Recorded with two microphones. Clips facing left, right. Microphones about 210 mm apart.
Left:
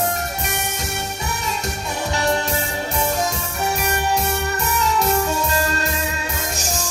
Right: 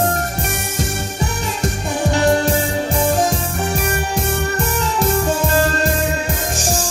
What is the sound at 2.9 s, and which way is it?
Music, 50° right (ahead or behind).